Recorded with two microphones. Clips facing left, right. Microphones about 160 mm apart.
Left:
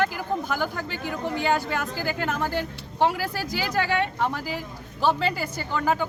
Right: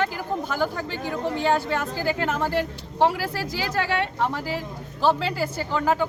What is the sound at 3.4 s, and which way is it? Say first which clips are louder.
Speech: even; 30° right (ahead or behind).